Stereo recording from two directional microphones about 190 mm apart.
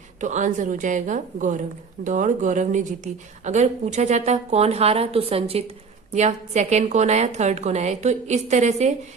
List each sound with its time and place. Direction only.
0.2 s a woman's voice: 40° right (ahead or behind)